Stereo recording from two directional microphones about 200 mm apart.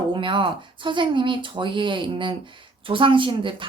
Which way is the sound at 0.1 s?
25° right (ahead or behind).